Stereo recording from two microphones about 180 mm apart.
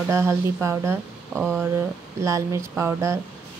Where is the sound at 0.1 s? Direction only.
15° right (ahead or behind).